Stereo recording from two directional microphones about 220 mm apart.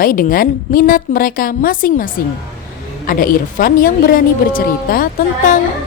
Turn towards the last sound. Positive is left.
turn(degrees=40)  # may be behind; listen again after turning